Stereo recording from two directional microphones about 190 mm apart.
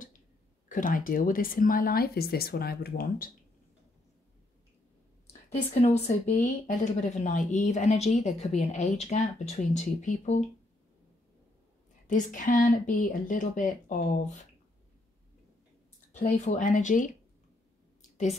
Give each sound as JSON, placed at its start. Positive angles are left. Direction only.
{"t": 0.7, "sound": "speech", "side_deg": 45}
{"t": 5.5, "sound": "speech", "side_deg": 35}
{"t": 12.1, "sound": "speech", "side_deg": 45}
{"t": 16.1, "sound": "speech", "side_deg": 40}